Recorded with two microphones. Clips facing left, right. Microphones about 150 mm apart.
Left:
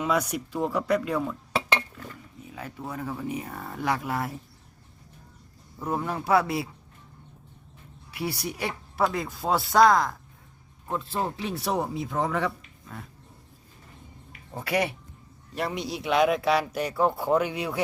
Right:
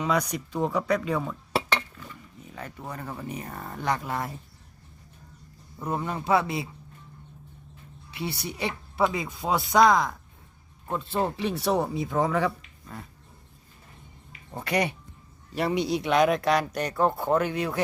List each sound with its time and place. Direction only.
0.0 s speech: 5° left (ahead or behind)
2.5 s speech: 5° left (ahead or behind)
6.1 s speech: 5° left (ahead or behind)
8.1 s a woman's voice: 25° right (ahead or behind)
8.6 s speech: centre (ahead or behind)
14.5 s speech: 5° left (ahead or behind)